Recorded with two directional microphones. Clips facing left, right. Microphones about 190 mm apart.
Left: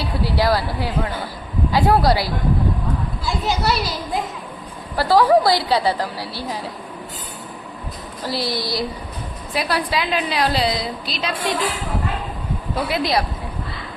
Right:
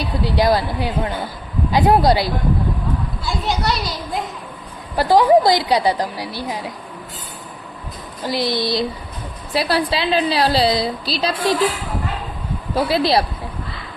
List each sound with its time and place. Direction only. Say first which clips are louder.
0.0 s speech: right 2 dB; 20° right (ahead or behind)
3.2 s a child's voice: left 1 dB; 5° left (ahead or behind)
4.9 s a woman's voice: right 2 dB; 20° right (ahead or behind)
8.3 s a woman's voice: right 4 dB; 20° right (ahead or behind); by 11.5 s 35° right (ahead or behind)
12.7 s a woman's voice: right 4 dB; 30° right (ahead or behind)